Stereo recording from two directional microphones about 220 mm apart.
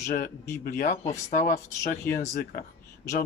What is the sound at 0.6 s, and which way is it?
Speech, 40° left (ahead or behind).